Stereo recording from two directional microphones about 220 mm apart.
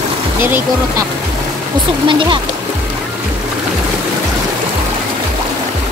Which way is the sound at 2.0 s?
20° right (ahead or behind).